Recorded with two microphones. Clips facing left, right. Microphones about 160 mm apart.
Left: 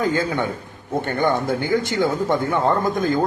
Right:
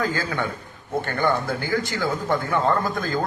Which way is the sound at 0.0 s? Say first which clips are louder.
Left 4 dB; 20° left (ahead or behind).